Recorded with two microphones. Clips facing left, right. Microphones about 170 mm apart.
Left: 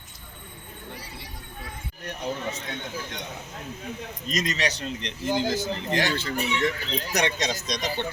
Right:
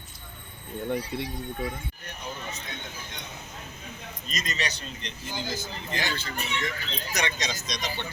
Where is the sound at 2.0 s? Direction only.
90° left.